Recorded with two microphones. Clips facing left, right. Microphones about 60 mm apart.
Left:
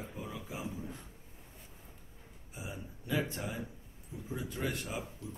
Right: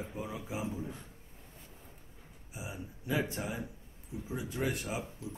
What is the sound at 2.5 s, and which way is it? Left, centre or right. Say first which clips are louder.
Speech: right 1 dB; centre.